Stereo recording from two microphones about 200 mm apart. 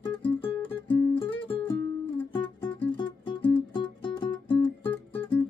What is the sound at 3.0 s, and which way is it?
Music, 25° left (ahead or behind).